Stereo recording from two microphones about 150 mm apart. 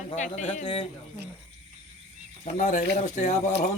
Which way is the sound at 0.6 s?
35° left (ahead or behind).